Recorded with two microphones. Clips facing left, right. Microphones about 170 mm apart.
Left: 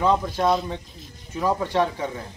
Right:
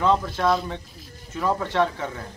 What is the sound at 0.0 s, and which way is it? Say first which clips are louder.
Speech: left 1 dB; 15° left (ahead or behind).